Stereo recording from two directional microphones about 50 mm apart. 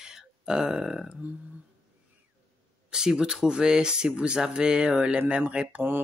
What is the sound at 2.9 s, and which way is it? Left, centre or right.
Speech, centre.